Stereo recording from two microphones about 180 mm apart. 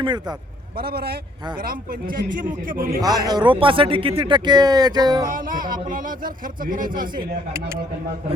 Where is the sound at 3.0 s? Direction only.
20° right (ahead or behind).